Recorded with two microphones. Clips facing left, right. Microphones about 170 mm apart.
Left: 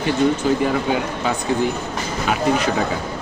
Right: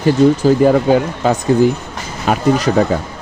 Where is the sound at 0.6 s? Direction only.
40° right (ahead or behind).